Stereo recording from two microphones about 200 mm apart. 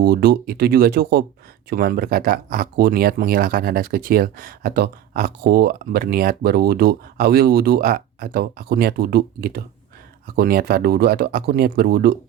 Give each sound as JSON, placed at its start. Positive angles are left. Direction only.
{"t": 0.0, "sound": "speech", "side_deg": -55}